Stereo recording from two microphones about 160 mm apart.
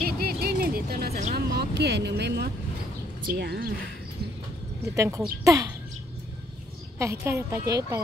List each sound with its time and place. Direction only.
0.0 s music: 75° right (ahead or behind)
1.3 s vehicle: 80° right
3.3 s speech: 80° right
4.9 s a woman's voice: 20° right (ahead or behind)
7.0 s a woman's voice: 15° right (ahead or behind)